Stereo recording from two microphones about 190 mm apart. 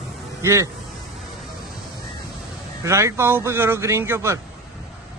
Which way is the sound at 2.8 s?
15° right (ahead or behind).